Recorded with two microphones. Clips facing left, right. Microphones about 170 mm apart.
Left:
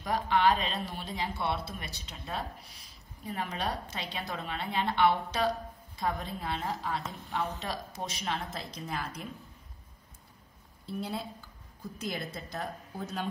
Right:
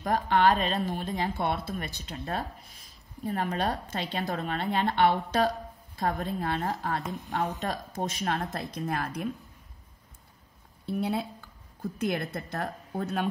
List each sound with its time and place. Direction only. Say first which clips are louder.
0.0 s a woman's voice: right 3 dB; 50° right (ahead or behind)
10.9 s a woman's voice: right 6 dB; 65° right (ahead or behind)